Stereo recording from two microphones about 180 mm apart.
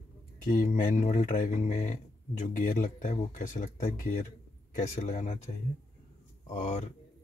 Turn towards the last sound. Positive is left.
turn(degrees=40)  # may be behind; listen again after turning